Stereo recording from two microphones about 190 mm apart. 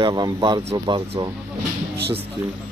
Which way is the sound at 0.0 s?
25° right (ahead or behind).